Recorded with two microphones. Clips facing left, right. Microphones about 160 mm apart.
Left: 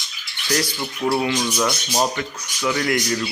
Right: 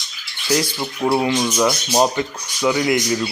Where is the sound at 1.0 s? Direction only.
25° right (ahead or behind).